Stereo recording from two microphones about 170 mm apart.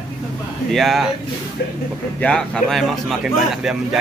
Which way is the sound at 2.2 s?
5° left (ahead or behind).